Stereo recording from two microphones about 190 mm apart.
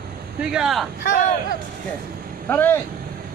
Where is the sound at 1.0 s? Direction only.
45° left (ahead or behind).